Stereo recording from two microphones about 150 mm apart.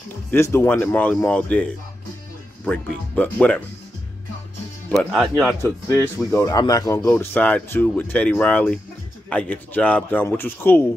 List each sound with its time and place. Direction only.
0.3 s speech: 15° left (ahead or behind)
4.9 s speech: centre (ahead or behind)
5.6 s speech: 20° left (ahead or behind)